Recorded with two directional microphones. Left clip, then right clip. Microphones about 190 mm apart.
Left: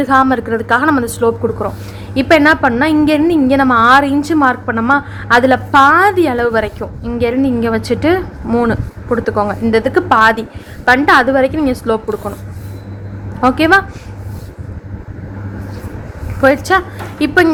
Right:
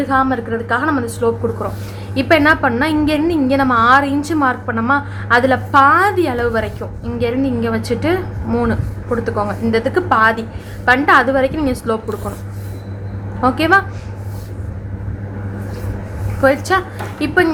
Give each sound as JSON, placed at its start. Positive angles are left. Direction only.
{"t": 0.0, "sound": "a woman's voice", "side_deg": 40}
{"t": 13.4, "sound": "a woman's voice", "side_deg": 30}
{"t": 16.4, "sound": "a woman's voice", "side_deg": 35}